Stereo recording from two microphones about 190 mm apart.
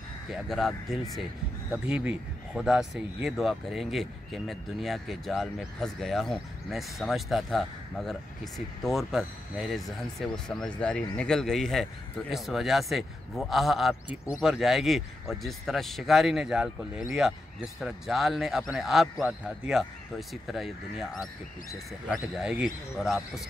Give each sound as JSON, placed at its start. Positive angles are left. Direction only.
{"t": 0.3, "sound": "speech", "side_deg": 0}
{"t": 22.4, "sound": "speech", "side_deg": -5}